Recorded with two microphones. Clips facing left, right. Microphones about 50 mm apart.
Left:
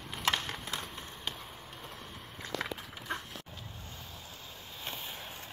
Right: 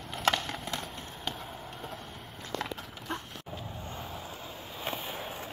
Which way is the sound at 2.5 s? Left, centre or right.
Centre.